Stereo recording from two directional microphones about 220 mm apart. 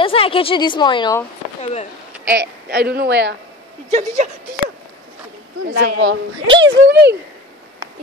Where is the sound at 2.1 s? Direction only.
5° right (ahead or behind).